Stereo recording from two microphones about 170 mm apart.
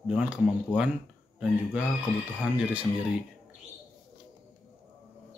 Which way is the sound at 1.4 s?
10° right (ahead or behind).